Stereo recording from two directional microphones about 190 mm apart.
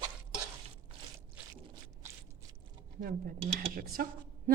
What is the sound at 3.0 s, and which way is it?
Dishes, 50° right (ahead or behind).